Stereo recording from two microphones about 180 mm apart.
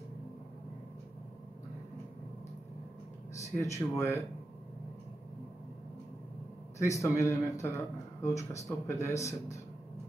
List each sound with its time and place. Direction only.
3.3 s speech: 15° left (ahead or behind)
6.8 s speech: 15° left (ahead or behind)